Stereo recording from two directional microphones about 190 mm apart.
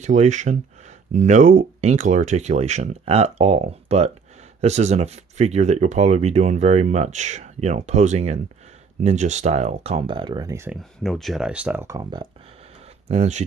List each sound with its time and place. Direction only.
0.0 s speech: 40° right (ahead or behind); by 10.8 s 15° right (ahead or behind)
10.8 s speech: centre (ahead or behind); by 12.3 s 20° right (ahead or behind)
13.1 s speech: 35° right (ahead or behind)